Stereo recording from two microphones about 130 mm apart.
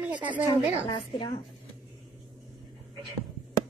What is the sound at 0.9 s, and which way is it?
Speech, 40° left (ahead or behind).